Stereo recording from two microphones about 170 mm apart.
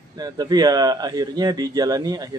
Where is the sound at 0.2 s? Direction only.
25° right (ahead or behind).